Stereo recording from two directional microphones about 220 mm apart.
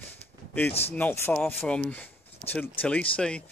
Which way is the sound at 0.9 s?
10° left (ahead or behind).